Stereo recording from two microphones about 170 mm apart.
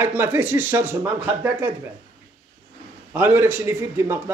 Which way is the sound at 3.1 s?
10° right (ahead or behind).